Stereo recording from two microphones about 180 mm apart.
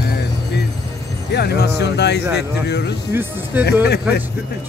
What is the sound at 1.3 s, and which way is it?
Speech, 65° left (ahead or behind).